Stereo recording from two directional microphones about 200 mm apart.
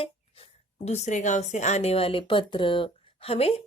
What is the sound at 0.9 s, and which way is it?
A woman's voice, 35° left (ahead or behind).